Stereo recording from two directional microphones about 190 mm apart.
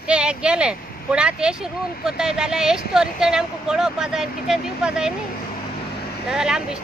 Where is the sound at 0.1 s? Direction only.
5° right (ahead or behind).